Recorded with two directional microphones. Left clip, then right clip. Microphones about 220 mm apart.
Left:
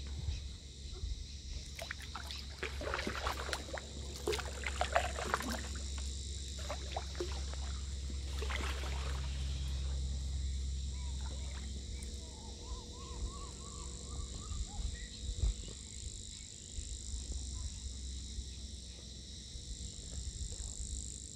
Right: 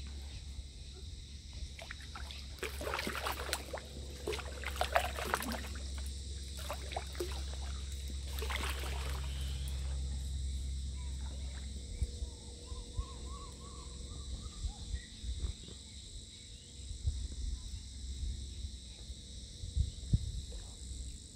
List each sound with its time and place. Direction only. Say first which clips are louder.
1.8 s a sound: left 3 dB; 35° left (ahead or behind)
2.6 s pour: right 1 dB; 30° right (ahead or behind)
4.2 s a sound: left 3 dB; 25° left (ahead or behind)
4.6 s boat: right 1 dB; 35° right (ahead or behind)
6.6 s pour: right 1 dB; 30° right (ahead or behind)
8.4 s boat: right 2 dB; 30° right (ahead or behind)